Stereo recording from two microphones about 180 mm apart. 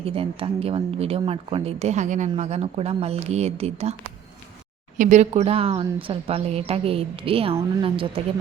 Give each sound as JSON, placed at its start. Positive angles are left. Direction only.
{"t": 0.0, "sound": "speech", "side_deg": -30}
{"t": 4.9, "sound": "speech", "side_deg": -40}